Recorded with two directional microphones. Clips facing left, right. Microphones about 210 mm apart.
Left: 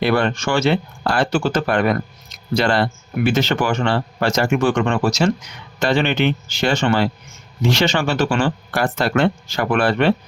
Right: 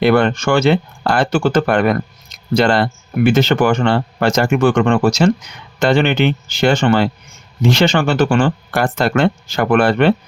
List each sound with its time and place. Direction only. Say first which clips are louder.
0.0 s speech: right 5 dB; 55° right (ahead or behind)